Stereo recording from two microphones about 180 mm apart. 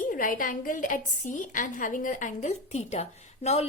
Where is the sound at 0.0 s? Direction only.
50° left (ahead or behind).